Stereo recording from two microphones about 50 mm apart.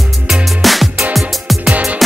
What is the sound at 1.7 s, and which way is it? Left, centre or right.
Music, centre.